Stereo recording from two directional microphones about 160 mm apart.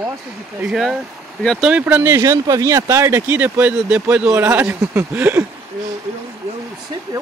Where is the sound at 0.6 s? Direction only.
5° right (ahead or behind).